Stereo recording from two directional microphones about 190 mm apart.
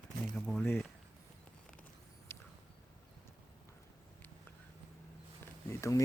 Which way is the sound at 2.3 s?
10° left (ahead or behind).